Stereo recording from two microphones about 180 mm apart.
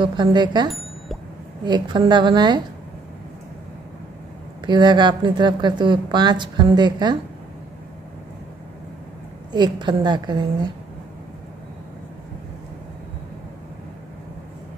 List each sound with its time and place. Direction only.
0.0 s a woman's voice: 25° right (ahead or behind)
0.7 s plop: centre (ahead or behind)
1.7 s a woman's voice: 25° right (ahead or behind)
4.6 s a woman's voice: 25° right (ahead or behind)
9.5 s a woman's voice: 25° right (ahead or behind)